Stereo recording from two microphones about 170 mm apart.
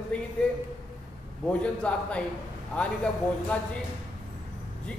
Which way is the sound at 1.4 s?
5° left (ahead or behind).